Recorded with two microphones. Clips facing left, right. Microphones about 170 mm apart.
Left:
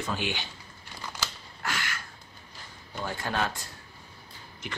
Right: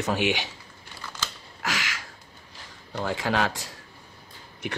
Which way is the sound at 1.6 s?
90° right.